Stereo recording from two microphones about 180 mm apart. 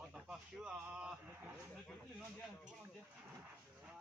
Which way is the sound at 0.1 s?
5° right (ahead or behind).